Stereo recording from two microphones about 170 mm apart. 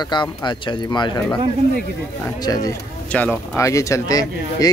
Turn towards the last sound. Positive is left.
turn(degrees=20)  # may be behind; listen again after turning